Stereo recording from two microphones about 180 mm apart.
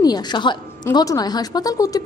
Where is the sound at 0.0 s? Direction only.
20° left (ahead or behind).